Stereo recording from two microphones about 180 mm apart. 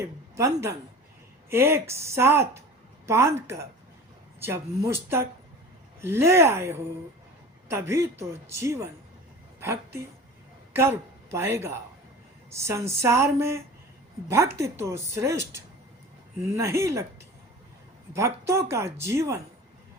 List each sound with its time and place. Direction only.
0.0 s a woman's voice: 15° right (ahead or behind)
18.1 s speech: 15° right (ahead or behind)